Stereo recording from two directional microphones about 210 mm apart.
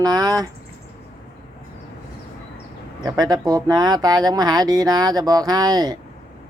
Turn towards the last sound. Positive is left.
turn(degrees=-20)  # may be behind; listen again after turning